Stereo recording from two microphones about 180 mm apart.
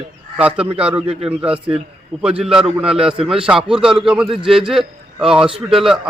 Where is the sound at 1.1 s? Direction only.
35° right (ahead or behind).